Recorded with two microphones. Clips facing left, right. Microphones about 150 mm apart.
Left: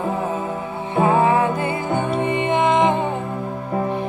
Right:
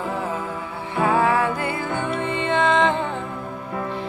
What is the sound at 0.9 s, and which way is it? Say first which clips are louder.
Music: left 3 dB; 20° left (ahead or behind).